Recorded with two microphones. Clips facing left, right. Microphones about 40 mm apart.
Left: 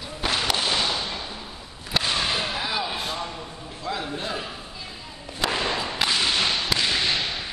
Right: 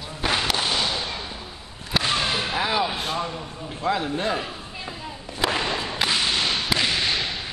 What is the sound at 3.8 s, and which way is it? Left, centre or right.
Speech, right.